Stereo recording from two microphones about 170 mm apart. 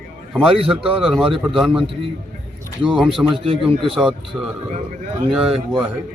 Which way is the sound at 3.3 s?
30° right (ahead or behind).